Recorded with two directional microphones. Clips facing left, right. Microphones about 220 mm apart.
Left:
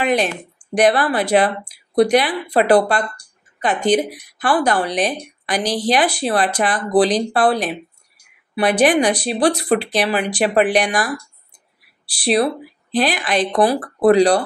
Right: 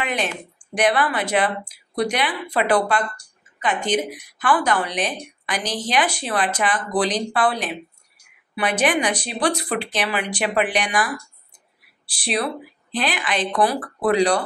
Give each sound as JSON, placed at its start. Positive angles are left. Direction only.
{"t": 0.0, "sound": "a woman's voice", "side_deg": 35}
{"t": 12.2, "sound": "a woman's voice", "side_deg": 35}